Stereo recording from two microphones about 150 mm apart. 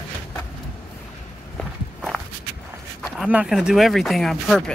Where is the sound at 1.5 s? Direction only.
Centre (ahead or behind).